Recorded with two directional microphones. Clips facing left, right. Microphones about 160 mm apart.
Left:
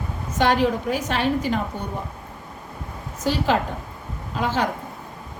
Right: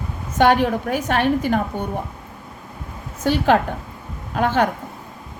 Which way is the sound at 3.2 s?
55° right (ahead or behind).